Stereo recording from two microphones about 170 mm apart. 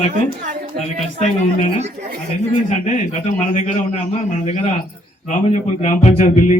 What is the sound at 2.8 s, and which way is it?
A man's voice, 45° left (ahead or behind).